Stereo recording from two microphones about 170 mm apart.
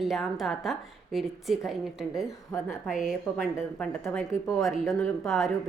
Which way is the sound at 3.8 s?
5° left (ahead or behind).